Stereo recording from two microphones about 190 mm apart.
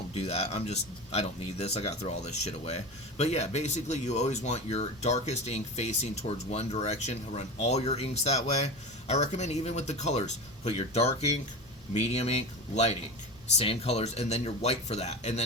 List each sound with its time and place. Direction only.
0.1 s speech: 30° left (ahead or behind)